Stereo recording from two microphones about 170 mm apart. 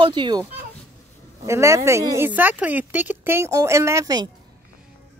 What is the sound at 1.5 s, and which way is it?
Speech, 15° right (ahead or behind).